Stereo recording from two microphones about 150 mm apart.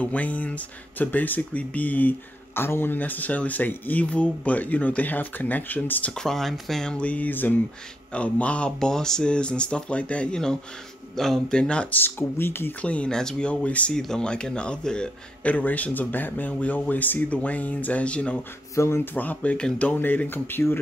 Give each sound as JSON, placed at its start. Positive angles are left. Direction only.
{"t": 0.0, "sound": "speech", "side_deg": 10}